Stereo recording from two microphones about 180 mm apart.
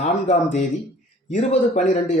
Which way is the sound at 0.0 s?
40° left (ahead or behind).